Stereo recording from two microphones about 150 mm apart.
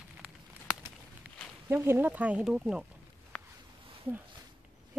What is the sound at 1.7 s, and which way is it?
Speech, 15° right (ahead or behind).